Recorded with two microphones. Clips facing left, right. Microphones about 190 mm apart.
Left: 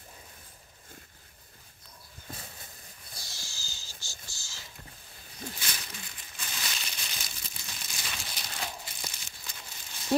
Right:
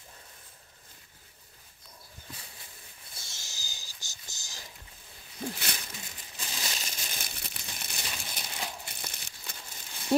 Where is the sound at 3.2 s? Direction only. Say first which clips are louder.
Even; 20° right (ahead or behind).